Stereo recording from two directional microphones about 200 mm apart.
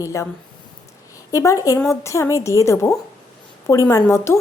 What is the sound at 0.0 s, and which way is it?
Speech, 15° left (ahead or behind).